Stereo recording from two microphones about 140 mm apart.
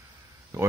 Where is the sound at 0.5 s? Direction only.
20° right (ahead or behind).